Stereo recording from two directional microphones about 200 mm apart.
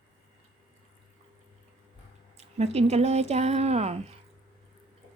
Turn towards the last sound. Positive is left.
turn(degrees=-35)  # may be behind; listen again after turning